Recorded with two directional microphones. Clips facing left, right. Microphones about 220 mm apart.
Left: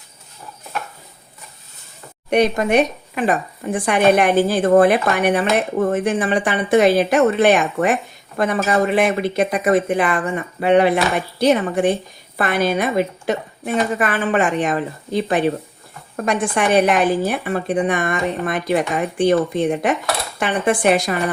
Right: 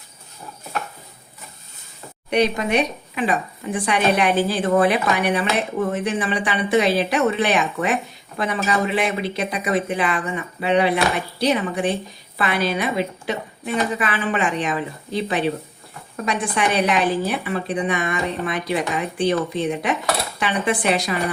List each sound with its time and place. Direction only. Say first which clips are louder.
2.3 s speech: left 4 dB; 50° left (ahead or behind)